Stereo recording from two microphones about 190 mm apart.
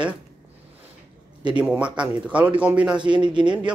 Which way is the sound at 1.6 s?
5° right (ahead or behind).